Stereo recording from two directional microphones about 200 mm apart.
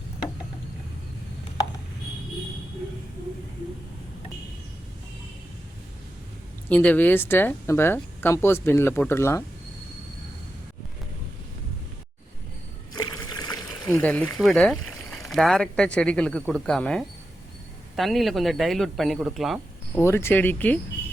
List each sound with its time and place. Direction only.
6.7 s speech: 10° left (ahead or behind)
12.9 s rowboat: 20° left (ahead or behind)
13.8 s speech: 5° left (ahead or behind)
20.0 s speech: 10° left (ahead or behind)